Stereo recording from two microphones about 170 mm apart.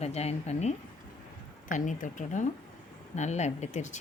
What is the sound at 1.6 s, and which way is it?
Speech, 50° left (ahead or behind).